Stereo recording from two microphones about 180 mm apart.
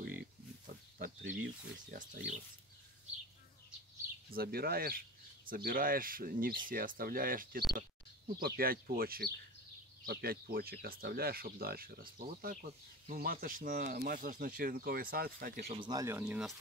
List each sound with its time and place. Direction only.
0.0 s pig: 60° right (ahead or behind)
0.9 s a sound: 65° right (ahead or behind)
1.4 s speech: 50° right (ahead or behind)
4.3 s speech: 55° right (ahead or behind)
15.6 s speech: 30° right (ahead or behind); by 16.5 s 5° right (ahead or behind)